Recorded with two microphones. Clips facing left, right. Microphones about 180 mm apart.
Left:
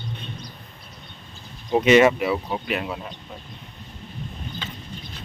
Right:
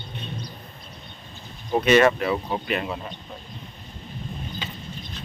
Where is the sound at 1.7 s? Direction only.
15° left (ahead or behind); by 3.1 s centre (ahead or behind).